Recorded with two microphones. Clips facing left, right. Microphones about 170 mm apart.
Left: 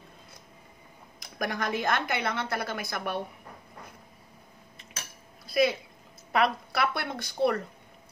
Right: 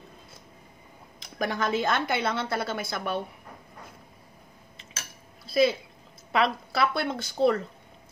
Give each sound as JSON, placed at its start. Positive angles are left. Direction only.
{"t": 1.4, "sound": "a woman's voice", "side_deg": -25}
{"t": 5.5, "sound": "a woman's voice", "side_deg": -25}